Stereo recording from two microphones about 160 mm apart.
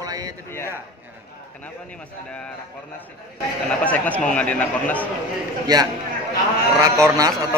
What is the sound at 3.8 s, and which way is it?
A man's voice, 10° left (ahead or behind).